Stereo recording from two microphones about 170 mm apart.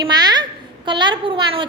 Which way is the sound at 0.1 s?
25° right (ahead or behind).